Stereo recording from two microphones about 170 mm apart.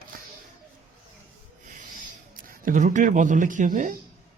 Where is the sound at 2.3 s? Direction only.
55° right (ahead or behind).